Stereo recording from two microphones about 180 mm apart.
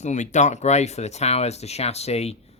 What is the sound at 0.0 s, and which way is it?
Speech, 40° left (ahead or behind).